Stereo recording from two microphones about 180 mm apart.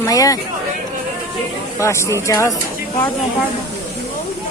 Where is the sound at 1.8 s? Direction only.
15° left (ahead or behind).